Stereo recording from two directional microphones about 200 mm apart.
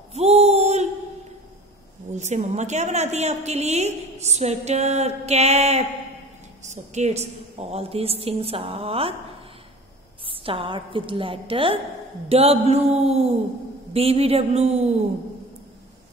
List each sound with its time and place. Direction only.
0.1 s a sound: 30° right (ahead or behind)
2.1 s a woman's voice: 35° right (ahead or behind)
10.2 s a woman's voice: 25° right (ahead or behind)